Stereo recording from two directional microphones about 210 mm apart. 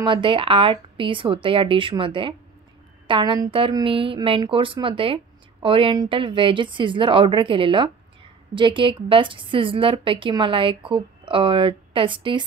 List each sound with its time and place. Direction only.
0.0 s a woman's voice: 25° right (ahead or behind)